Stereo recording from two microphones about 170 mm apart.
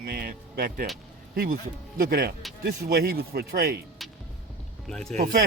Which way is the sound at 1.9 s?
60° right (ahead or behind).